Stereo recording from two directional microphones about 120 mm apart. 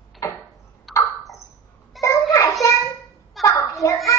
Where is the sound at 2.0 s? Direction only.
25° left (ahead or behind).